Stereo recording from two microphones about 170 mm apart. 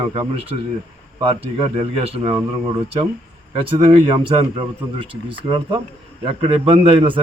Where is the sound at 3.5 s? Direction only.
30° right (ahead or behind).